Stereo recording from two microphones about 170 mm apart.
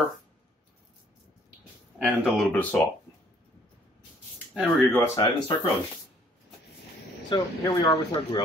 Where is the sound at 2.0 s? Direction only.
Centre (ahead or behind).